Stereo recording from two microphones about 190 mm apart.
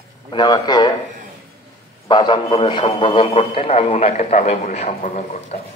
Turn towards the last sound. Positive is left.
turn(degrees=40)  # may be behind; listen again after turning